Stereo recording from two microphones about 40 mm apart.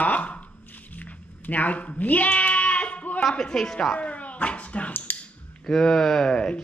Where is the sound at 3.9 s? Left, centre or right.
Left.